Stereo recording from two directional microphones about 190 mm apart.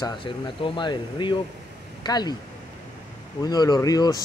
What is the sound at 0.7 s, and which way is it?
Speech, 25° left (ahead or behind).